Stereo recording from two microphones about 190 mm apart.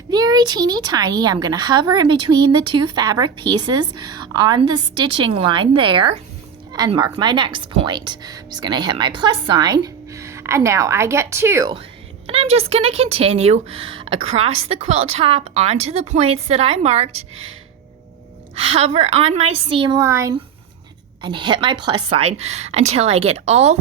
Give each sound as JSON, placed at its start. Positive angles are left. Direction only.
{"t": 0.1, "sound": "a woman's voice", "side_deg": -20}
{"t": 12.3, "sound": "speech", "side_deg": -30}
{"t": 18.5, "sound": "speech", "side_deg": -30}